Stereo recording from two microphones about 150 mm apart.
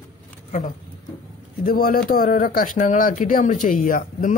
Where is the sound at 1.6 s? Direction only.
70° left (ahead or behind).